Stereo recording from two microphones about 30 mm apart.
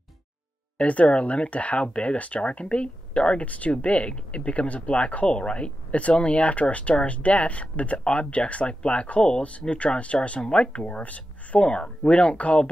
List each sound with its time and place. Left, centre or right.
0.7 s speech: left
1.8 s speech: left
2.1 s speech: left
3.4 s speech: left
10.4 s speech: left
11.6 s speech: left